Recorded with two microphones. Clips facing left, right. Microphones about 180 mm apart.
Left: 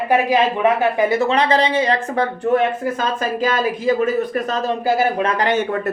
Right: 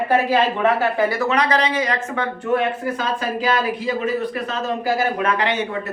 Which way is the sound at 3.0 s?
45° left (ahead or behind).